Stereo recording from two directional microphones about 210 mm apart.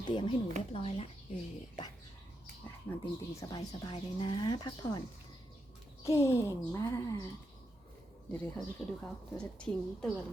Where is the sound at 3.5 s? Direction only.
20° left (ahead or behind).